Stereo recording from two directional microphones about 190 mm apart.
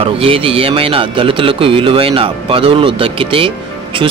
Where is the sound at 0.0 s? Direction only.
30° right (ahead or behind).